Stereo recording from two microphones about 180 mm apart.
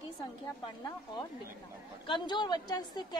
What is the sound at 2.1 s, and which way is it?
A woman's voice, 25° left (ahead or behind).